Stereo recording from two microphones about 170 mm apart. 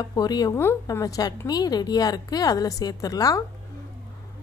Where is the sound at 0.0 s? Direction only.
25° left (ahead or behind).